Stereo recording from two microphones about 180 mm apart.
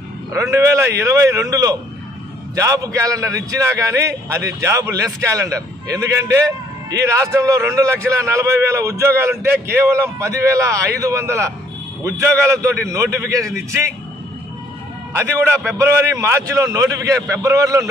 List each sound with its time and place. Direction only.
0.3 s a man's voice: 15° right (ahead or behind)
12.9 s a man's voice: 15° right (ahead or behind)
15.1 s a man's voice: 15° right (ahead or behind)